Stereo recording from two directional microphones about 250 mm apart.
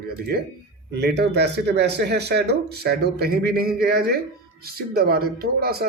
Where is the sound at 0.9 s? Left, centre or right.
Right.